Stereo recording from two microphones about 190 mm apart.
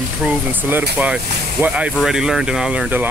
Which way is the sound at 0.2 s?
10° right (ahead or behind).